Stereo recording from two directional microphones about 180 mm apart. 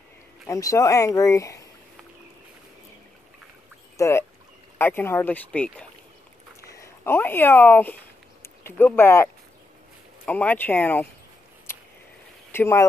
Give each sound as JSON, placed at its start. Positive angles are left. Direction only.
{"t": 0.5, "sound": "speech", "side_deg": 20}
{"t": 3.9, "sound": "fowl", "side_deg": 15}
{"t": 4.7, "sound": "speech", "side_deg": 10}
{"t": 11.7, "sound": "a sound", "side_deg": 15}
{"t": 12.5, "sound": "speech", "side_deg": 15}